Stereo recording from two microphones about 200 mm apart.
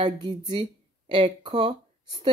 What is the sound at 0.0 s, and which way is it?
Speech, 25° right (ahead or behind).